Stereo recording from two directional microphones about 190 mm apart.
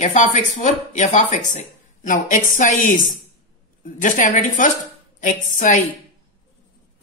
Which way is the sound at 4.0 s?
40° left (ahead or behind).